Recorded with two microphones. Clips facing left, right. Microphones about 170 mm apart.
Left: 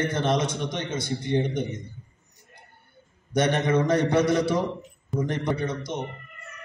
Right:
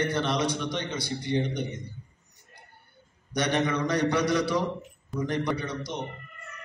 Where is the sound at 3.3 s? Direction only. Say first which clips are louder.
Left 4 dB; 25° left (ahead or behind).